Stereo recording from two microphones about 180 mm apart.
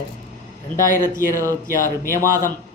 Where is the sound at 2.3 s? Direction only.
50° left (ahead or behind).